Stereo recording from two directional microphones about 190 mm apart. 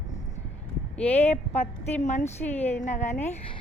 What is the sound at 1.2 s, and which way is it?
A woman's voice, 35° left (ahead or behind).